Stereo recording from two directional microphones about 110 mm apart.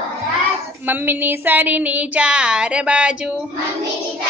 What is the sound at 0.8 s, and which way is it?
Speech, 15° right (ahead or behind).